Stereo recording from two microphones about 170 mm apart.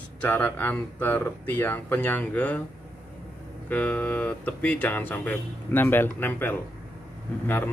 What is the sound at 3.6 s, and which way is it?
Speech, 10° left (ahead or behind).